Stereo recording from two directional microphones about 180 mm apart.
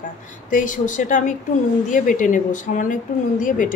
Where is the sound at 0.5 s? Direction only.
45° left (ahead or behind).